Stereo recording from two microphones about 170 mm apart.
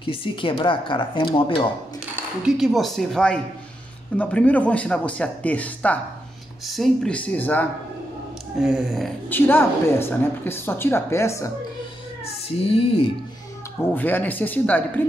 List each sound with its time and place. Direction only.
0.0 s speech: 30° left (ahead or behind)
2.4 s a woman's voice: centre (ahead or behind)
8.5 s a woman's voice: centre (ahead or behind)
9.3 s a woman's voice: 10° left (ahead or behind)
12.5 s speech: 35° left (ahead or behind)
13.9 s a woman's voice: 10° left (ahead or behind)